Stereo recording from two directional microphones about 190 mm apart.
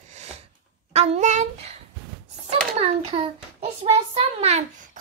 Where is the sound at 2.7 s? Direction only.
30° right (ahead or behind).